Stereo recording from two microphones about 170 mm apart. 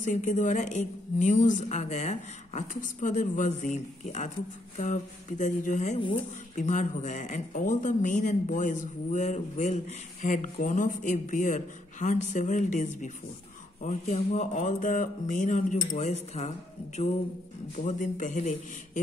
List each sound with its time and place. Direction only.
0.0 s a man's voice: 50° left (ahead or behind)